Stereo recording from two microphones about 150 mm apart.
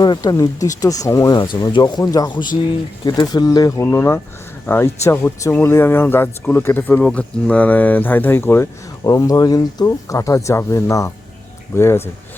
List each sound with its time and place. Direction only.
0.0 s speech: 25° left (ahead or behind)